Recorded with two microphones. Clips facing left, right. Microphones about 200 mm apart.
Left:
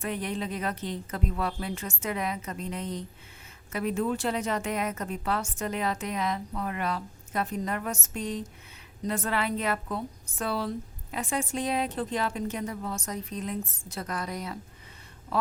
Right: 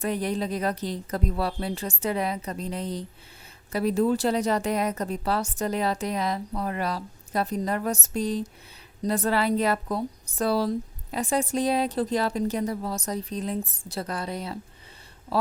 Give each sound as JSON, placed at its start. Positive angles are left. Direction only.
{"t": 0.0, "sound": "a woman's voice", "side_deg": -35}